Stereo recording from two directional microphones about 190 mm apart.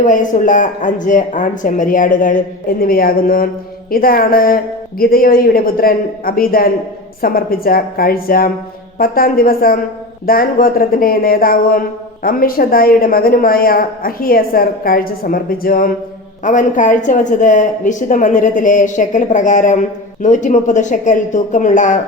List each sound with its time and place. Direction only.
0.0 s a woman's voice: 45° left (ahead or behind)